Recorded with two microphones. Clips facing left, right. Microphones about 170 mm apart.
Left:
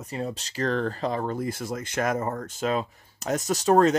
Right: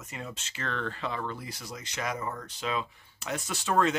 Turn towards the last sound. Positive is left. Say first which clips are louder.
# left 7 dB
turn(degrees=40)  # may be behind; listen again after turning